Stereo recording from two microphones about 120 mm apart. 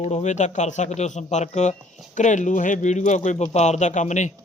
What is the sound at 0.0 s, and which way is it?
A man's voice, 75° left (ahead or behind).